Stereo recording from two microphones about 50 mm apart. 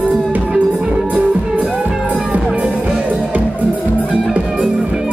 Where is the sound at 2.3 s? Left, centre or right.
Right.